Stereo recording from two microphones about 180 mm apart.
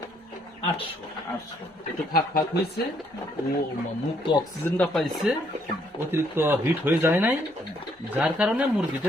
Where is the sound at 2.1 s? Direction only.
55° left (ahead or behind).